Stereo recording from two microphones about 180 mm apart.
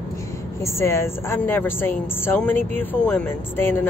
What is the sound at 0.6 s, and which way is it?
Speech, 15° left (ahead or behind).